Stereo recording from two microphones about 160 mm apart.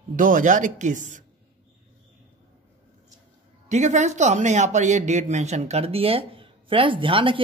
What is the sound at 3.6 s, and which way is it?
Speech, 50° right (ahead or behind).